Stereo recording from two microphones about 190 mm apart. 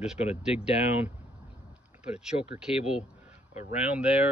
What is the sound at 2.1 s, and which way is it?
Speech, 5° right (ahead or behind).